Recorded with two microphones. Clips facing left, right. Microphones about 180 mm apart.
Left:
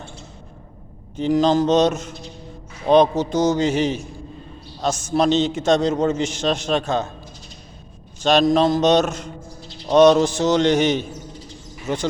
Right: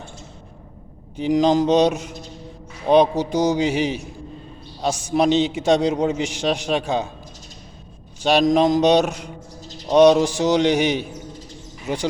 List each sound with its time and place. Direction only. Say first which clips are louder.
1.1 s a man's voice: even; 15° right (ahead or behind)
8.2 s a man's voice: even; 10° right (ahead or behind)